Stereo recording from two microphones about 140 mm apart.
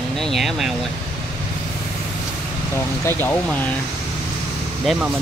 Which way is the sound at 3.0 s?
15° left (ahead or behind).